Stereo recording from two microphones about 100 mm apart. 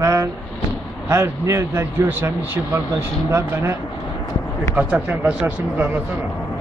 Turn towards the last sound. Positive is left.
turn(degrees=-15)  # may be behind; listen again after turning